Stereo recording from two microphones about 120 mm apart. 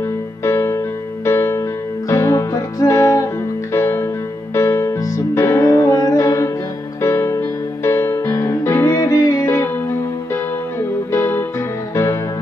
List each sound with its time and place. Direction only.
0.4 s music: 25° left (ahead or behind)
11.1 s music: 20° left (ahead or behind)